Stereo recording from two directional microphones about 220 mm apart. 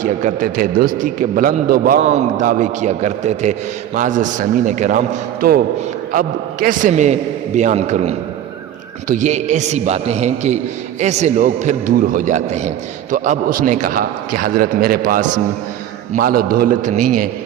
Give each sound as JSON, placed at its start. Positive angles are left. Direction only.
{"t": 0.0, "sound": "a man's voice", "side_deg": -35}